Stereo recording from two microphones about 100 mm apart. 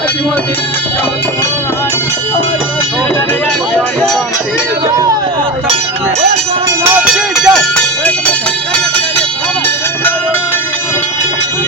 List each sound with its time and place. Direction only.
6.8 s music: 15° right (ahead or behind)